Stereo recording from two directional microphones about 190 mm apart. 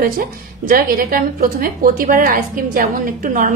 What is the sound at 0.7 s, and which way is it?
A woman's voice, 50° right (ahead or behind).